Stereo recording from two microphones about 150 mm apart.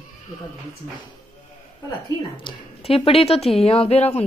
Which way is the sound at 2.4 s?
40° left (ahead or behind).